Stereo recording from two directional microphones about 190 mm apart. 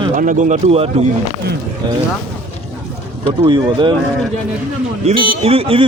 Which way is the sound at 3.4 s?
25° right (ahead or behind).